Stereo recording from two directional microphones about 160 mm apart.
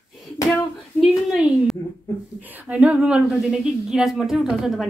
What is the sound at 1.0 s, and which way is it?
A woman's voice, centre (ahead or behind).